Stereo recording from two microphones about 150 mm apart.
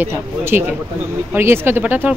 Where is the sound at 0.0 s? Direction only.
15° right (ahead or behind).